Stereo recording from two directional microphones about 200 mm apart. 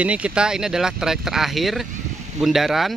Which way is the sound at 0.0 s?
5° right (ahead or behind).